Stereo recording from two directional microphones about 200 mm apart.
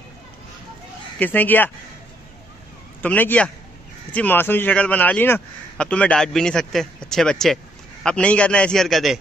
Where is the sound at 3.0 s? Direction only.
10° left (ahead or behind).